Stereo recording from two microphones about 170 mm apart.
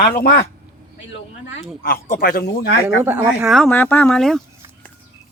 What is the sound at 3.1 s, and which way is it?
Speech, 10° right (ahead or behind).